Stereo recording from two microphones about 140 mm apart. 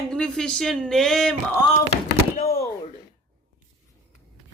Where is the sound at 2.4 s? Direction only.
90° left.